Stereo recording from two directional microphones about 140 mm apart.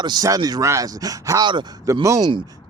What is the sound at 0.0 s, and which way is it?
Speech, 30° right (ahead or behind).